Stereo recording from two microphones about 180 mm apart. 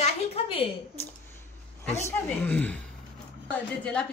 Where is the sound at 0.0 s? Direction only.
35° left (ahead or behind).